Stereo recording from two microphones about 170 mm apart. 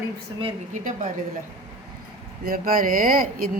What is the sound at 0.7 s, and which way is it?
Speech, 45° right (ahead or behind).